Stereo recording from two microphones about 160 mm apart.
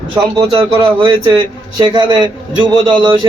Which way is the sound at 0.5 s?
30° right (ahead or behind).